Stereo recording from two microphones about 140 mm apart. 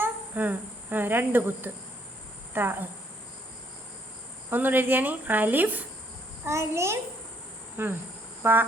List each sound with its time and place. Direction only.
0.0 s a woman's voice: 10° right (ahead or behind)
4.4 s a child's voice: 15° right (ahead or behind)